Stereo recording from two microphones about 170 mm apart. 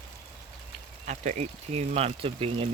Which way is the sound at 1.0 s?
45° right (ahead or behind).